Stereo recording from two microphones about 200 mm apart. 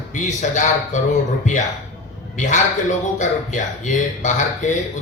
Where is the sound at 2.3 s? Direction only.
40° left (ahead or behind).